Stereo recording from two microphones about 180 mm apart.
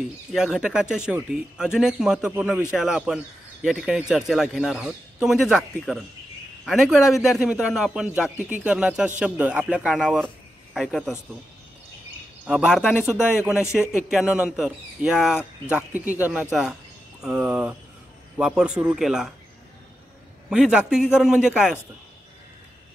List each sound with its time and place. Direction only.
0.3 s a man's voice: centre (ahead or behind)
12.4 s a man's voice: centre (ahead or behind)
20.4 s a man's voice: 5° right (ahead or behind)